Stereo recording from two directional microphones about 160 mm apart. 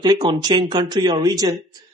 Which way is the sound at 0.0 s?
30° right (ahead or behind).